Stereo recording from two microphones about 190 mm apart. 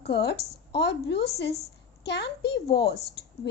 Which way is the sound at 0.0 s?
60° left (ahead or behind).